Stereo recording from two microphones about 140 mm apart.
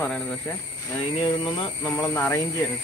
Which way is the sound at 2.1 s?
15° left (ahead or behind).